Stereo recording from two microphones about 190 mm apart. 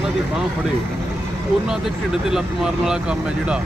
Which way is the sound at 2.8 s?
5° right (ahead or behind).